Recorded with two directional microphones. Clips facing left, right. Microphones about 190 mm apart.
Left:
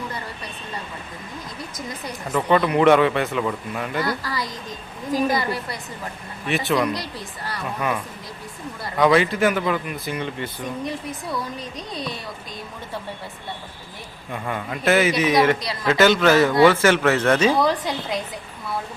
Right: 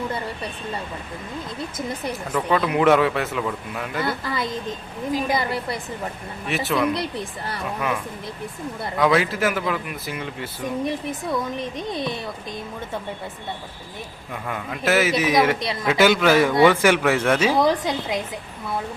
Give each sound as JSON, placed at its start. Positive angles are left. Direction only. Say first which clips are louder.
{"t": 2.3, "sound": "a man's voice", "louder": "left 3 dB", "side_deg": 0}
{"t": 4.0, "sound": "speech", "louder": "right 1 dB", "side_deg": -20}
{"t": 6.5, "sound": "a man's voice", "louder": "left 1 dB", "side_deg": 0}
{"t": 10.8, "sound": "speech", "louder": "right 3 dB", "side_deg": -20}
{"t": 14.4, "sound": "a man's voice", "louder": "left 2 dB", "side_deg": 0}
{"t": 15.6, "sound": "speech", "louder": "right 2 dB", "side_deg": -20}
{"t": 15.9, "sound": "speech", "louder": "left 1 dB", "side_deg": -10}
{"t": 17.6, "sound": "speech", "louder": "right 1 dB", "side_deg": -20}